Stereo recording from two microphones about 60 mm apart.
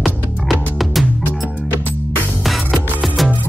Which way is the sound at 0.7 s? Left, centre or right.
Centre.